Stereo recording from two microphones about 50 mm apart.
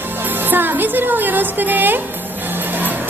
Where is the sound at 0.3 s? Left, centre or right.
Right.